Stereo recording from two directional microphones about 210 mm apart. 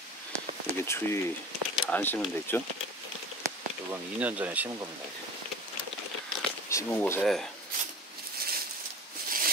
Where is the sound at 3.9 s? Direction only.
5° right (ahead or behind).